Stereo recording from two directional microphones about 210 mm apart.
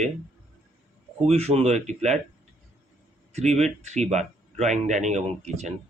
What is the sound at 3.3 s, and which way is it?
Speech, 30° right (ahead or behind).